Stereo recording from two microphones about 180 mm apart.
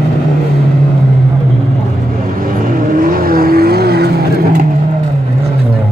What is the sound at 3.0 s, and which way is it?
Vehicle, 55° right (ahead or behind).